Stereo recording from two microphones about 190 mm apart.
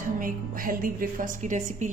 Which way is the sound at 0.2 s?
45° right (ahead or behind).